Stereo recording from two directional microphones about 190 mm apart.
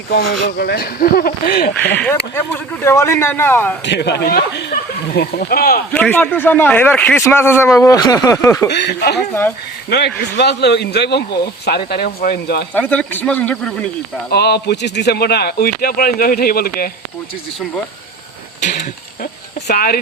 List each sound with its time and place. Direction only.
0.1 s speech: 55° left (ahead or behind)
2.3 s a man's voice: 15° left (ahead or behind)
3.8 s speech: 60° left (ahead or behind)
5.9 s a man's voice: 10° left (ahead or behind)
8.7 s speech: 60° left (ahead or behind)
12.7 s a man's voice: 10° left (ahead or behind)
14.3 s speech: 60° left (ahead or behind)
18.8 s speech: 55° left (ahead or behind)